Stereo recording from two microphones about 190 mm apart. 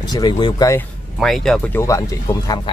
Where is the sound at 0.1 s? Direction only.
20° left (ahead or behind).